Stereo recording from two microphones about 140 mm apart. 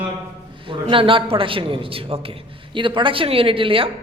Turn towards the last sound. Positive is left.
turn(degrees=-40)  # may be behind; listen again after turning